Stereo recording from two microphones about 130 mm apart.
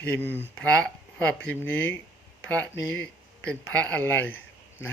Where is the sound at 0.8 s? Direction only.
10° left (ahead or behind).